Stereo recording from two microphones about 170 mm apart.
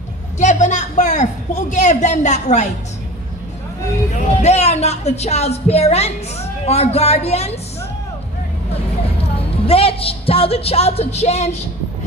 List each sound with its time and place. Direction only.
0.4 s a sound: 45° left (ahead or behind)
4.4 s a woman's voice: 40° left (ahead or behind)
9.2 s a woman's voice: 35° left (ahead or behind)